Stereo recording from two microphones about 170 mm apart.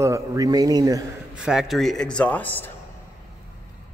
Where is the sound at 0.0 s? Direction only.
15° right (ahead or behind).